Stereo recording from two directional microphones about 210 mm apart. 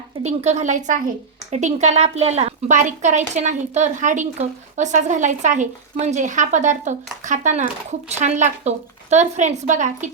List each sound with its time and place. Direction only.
0.3 s a woman's voice: 35° right (ahead or behind)